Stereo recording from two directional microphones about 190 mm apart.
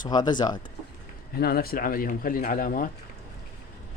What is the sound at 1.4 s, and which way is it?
Speech, 55° left (ahead or behind).